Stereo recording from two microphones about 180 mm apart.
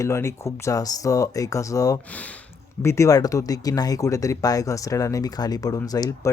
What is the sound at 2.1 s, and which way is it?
Speech, 10° left (ahead or behind).